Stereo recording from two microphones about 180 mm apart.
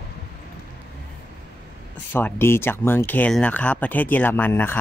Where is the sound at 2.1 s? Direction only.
10° left (ahead or behind).